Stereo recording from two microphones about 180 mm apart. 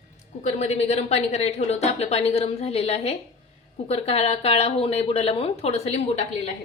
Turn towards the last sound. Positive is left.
turn(degrees=35)  # may be behind; listen again after turning